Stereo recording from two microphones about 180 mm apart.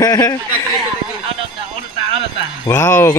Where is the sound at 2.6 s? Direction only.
15° left (ahead or behind).